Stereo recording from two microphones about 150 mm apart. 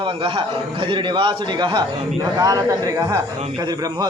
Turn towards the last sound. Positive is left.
turn(degrees=-20)  # may be behind; listen again after turning